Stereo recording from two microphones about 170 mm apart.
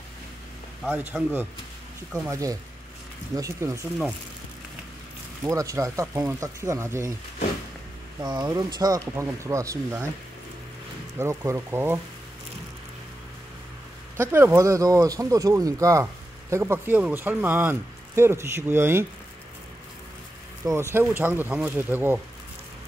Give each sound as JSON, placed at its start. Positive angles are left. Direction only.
{"t": 0.8, "sound": "speech", "side_deg": -10}
{"t": 5.5, "sound": "speech", "side_deg": -20}
{"t": 8.2, "sound": "speech", "side_deg": -20}
{"t": 11.1, "sound": "speech", "side_deg": -15}
{"t": 14.3, "sound": "speech", "side_deg": -15}
{"t": 20.6, "sound": "speech", "side_deg": -15}